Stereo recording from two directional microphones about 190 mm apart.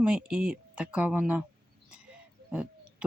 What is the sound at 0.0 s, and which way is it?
Speech, 5° right (ahead or behind).